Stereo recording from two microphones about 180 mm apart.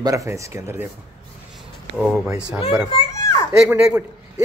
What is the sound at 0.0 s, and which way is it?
Speech, 20° right (ahead or behind).